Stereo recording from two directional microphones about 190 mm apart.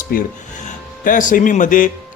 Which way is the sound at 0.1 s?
45° left (ahead or behind).